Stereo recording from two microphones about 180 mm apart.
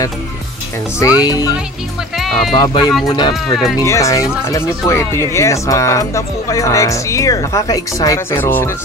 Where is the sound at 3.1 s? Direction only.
25° left (ahead or behind).